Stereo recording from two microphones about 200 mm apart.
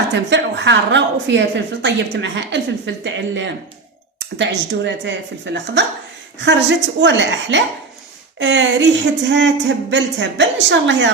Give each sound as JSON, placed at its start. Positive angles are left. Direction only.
{"t": 0.1, "sound": "a woman's voice", "side_deg": -60}